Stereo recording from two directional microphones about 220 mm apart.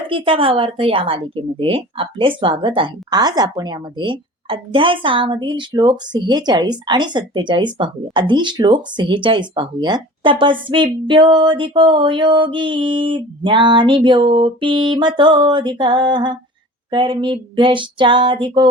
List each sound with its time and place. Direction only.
0.1 s speech: 25° right (ahead or behind)